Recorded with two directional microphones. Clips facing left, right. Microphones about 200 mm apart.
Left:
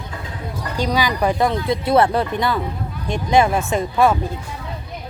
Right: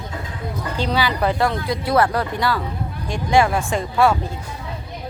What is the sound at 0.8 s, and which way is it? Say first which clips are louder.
Speech: left 2 dB; 15° left (ahead or behind).